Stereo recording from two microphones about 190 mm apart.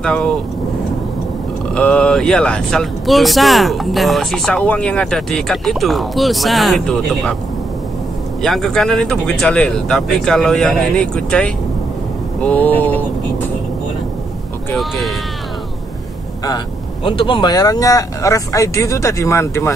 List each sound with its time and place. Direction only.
0.0 s speech: 5° left (ahead or behind)
1.7 s speech: 5° left (ahead or behind)
8.4 s speech: centre (ahead or behind)
14.8 s speech: centre (ahead or behind)
16.4 s speech: 25° left (ahead or behind)